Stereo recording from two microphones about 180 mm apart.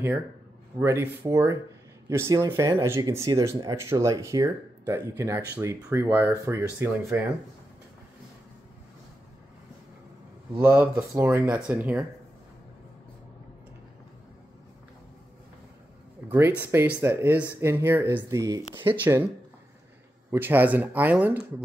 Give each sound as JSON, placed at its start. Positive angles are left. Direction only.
{"t": 0.7, "sound": "speech", "side_deg": -10}
{"t": 10.6, "sound": "speech", "side_deg": -10}
{"t": 16.3, "sound": "speech", "side_deg": -15}
{"t": 20.2, "sound": "speech", "side_deg": -10}